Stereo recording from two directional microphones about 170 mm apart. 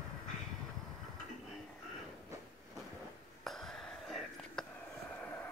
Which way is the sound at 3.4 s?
Centre (ahead or behind).